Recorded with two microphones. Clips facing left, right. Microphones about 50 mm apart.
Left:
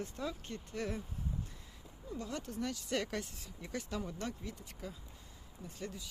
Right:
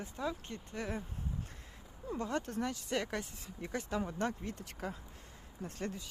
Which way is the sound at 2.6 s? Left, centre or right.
Right.